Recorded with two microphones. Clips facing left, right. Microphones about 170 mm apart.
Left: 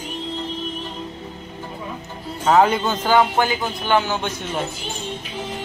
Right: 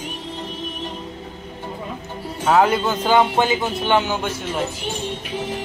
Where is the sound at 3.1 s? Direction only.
20° right (ahead or behind).